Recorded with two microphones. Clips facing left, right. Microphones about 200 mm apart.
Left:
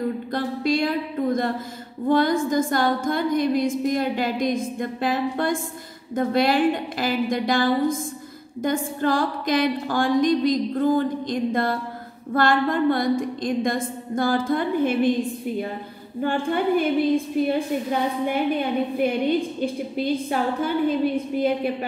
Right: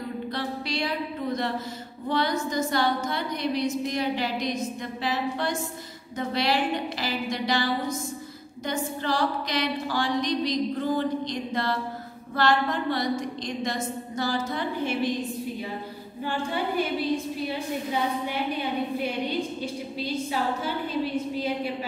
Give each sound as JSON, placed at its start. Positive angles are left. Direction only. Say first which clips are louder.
{"t": 0.3, "sound": "a sound", "louder": "left 9 dB", "side_deg": 50}
{"t": 2.0, "sound": "a woman's voice", "louder": "left 7 dB", "side_deg": 50}
{"t": 16.2, "sound": "a woman's voice", "louder": "left 6 dB", "side_deg": 55}